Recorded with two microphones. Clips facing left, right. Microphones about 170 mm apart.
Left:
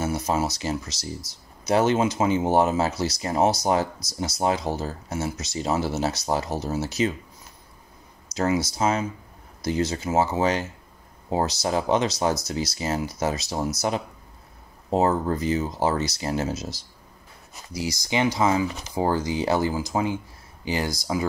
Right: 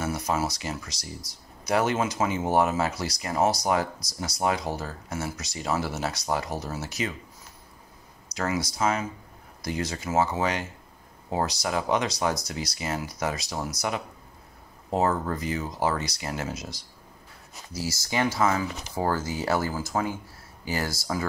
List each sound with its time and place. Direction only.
0.0 s a sound: 25° left (ahead or behind)
1.7 s speech: 25° left (ahead or behind)
8.4 s speech: 25° left (ahead or behind)
17.7 s speech: 15° left (ahead or behind)